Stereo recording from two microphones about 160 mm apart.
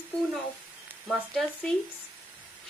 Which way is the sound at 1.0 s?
Centre (ahead or behind).